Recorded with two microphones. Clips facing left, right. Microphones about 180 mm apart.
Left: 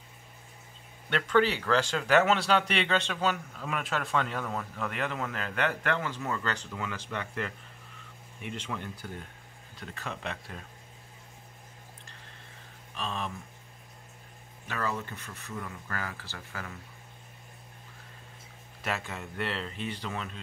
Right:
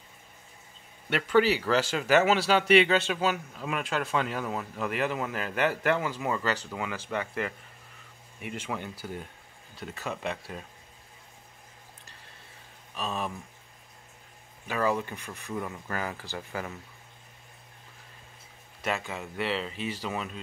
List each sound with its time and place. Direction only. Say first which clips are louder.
1.1 s speech: right 2 dB; 5° right (ahead or behind)
12.9 s speech: right 3 dB; 5° right (ahead or behind)
14.7 s speech: right 6 dB; 10° right (ahead or behind)
18.8 s speech: right 3 dB; centre (ahead or behind)